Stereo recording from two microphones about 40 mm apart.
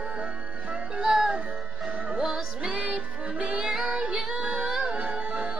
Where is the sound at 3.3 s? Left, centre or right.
Right.